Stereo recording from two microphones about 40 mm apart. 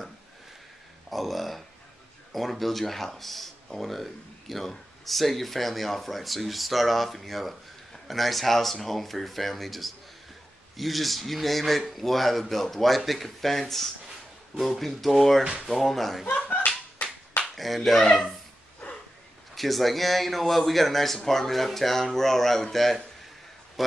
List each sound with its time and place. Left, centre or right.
1.1 s a sound: centre
2.3 s speech: centre
16.3 s slap: left
17.6 s speech: centre
19.5 s speech: centre